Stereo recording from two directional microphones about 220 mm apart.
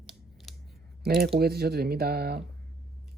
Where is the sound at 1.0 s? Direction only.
45° right (ahead or behind).